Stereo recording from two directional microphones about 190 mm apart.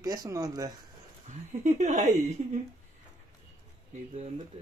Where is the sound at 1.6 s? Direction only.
40° right (ahead or behind).